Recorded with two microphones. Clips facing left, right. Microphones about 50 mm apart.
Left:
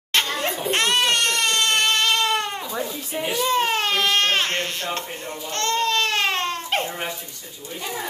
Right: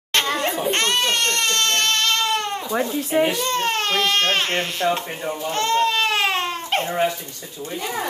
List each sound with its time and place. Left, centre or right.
0.7 s speech: centre
2.7 s speech: right
3.1 s a child's voice: right
3.3 s speech: centre
5.5 s baby cry: centre